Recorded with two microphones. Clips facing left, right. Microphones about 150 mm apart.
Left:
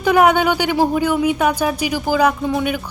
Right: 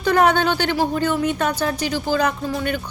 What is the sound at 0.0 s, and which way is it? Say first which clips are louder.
Speech: left 3 dB; 10° left (ahead or behind).